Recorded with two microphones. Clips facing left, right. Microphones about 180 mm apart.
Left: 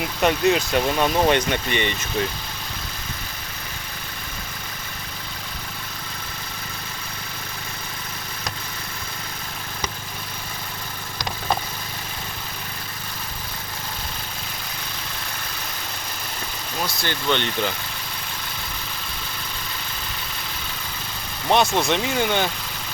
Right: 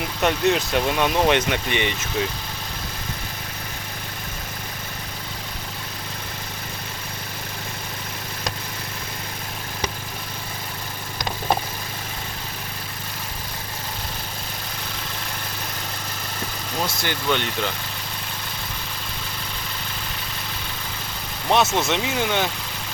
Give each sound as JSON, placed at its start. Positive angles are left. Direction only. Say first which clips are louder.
{"t": 0.2, "sound": "speech", "louder": "left 1 dB", "side_deg": 0}
{"t": 16.8, "sound": "speech", "louder": "even", "side_deg": -20}
{"t": 17.2, "sound": "speech", "louder": "left 1 dB", "side_deg": -5}
{"t": 21.5, "sound": "speech", "louder": "left 1 dB", "side_deg": -5}